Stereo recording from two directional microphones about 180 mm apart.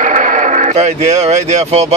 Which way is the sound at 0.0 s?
45° right (ahead or behind).